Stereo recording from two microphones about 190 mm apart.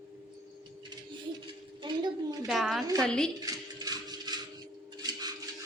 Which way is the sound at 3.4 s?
20° right (ahead or behind).